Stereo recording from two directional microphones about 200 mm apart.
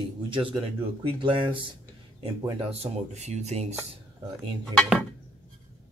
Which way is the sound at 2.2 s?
25° right (ahead or behind).